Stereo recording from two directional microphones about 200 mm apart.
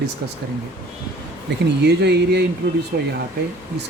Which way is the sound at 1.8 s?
55° right (ahead or behind).